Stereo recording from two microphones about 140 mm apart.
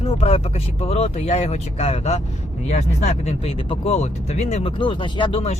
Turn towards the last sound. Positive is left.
turn(degrees=35)  # may be behind; listen again after turning